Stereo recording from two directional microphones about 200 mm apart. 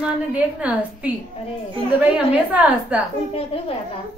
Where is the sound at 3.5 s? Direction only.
30° left (ahead or behind).